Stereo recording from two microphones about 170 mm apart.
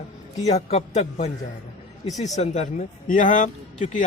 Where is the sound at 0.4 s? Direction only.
40° left (ahead or behind).